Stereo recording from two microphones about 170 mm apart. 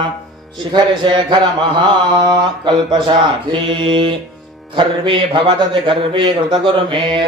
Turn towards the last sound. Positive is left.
turn(degrees=-30)  # may be behind; listen again after turning